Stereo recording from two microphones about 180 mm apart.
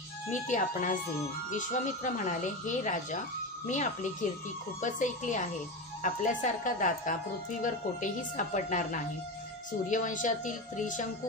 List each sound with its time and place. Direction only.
0.3 s speech: 45° left (ahead or behind)